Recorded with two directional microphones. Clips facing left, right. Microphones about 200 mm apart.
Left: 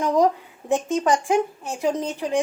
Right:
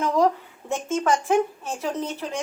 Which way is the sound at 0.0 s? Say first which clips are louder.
Left 2 dB; 15° left (ahead or behind).